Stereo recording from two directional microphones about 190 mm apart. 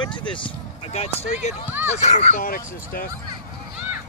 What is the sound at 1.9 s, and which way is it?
Speech, 35° left (ahead or behind).